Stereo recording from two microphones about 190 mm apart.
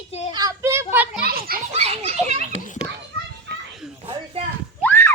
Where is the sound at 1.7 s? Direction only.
35° right (ahead or behind).